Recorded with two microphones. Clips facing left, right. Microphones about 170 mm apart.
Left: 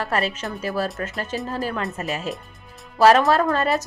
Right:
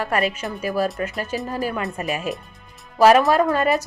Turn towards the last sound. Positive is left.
turn(degrees=-15)  # may be behind; listen again after turning